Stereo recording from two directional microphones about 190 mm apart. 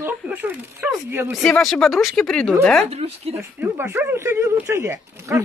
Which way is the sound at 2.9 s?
35° right (ahead or behind).